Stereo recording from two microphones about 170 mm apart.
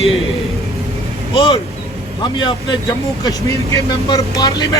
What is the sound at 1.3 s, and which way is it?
Speech, 35° left (ahead or behind).